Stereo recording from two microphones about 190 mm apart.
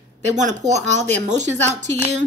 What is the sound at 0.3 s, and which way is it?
A woman's voice, 40° right (ahead or behind).